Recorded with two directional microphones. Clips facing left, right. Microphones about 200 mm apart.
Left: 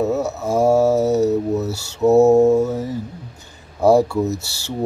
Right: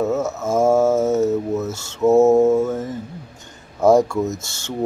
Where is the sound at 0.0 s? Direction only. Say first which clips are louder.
Left 1 dB; 15° left (ahead or behind).